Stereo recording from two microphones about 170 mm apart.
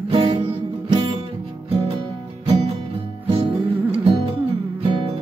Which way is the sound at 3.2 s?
30° right (ahead or behind).